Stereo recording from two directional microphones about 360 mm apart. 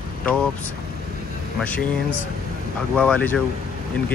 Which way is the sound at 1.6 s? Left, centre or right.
Centre.